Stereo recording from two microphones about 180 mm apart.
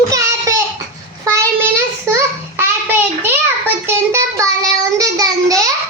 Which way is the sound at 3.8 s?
15° right (ahead or behind).